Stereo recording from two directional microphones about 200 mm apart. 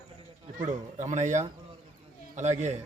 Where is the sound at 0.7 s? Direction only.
35° right (ahead or behind).